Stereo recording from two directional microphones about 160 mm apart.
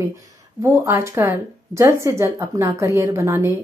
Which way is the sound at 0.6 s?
20° right (ahead or behind).